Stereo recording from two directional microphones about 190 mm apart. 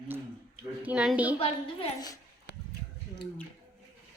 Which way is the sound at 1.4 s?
25° left (ahead or behind).